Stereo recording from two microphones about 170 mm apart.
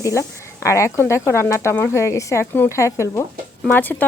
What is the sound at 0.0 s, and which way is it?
Speech, 15° left (ahead or behind).